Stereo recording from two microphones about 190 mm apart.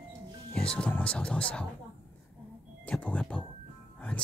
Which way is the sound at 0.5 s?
5° left (ahead or behind).